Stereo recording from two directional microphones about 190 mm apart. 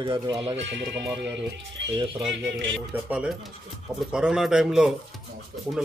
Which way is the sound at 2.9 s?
5° right (ahead or behind).